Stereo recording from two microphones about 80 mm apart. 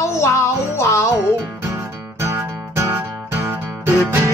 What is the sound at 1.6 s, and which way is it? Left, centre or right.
Music, right.